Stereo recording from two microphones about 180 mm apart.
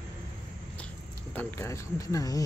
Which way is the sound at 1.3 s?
10° left (ahead or behind).